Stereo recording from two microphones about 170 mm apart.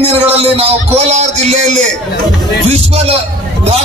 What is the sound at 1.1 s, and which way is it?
Speech, 40° right (ahead or behind).